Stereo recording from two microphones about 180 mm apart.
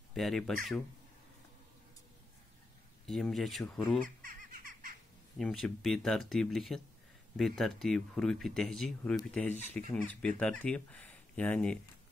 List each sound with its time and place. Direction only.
0.1 s speech: centre (ahead or behind)
3.1 s speech: centre (ahead or behind)
4.2 s a sound: 50° right (ahead or behind)
5.4 s speech: centre (ahead or behind)